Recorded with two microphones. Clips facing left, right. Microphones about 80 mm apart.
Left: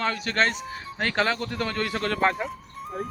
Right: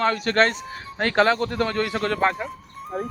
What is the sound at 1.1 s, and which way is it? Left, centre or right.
Speech, right.